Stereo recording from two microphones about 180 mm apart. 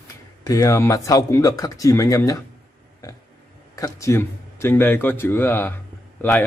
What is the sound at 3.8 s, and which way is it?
A man's voice, 15° left (ahead or behind).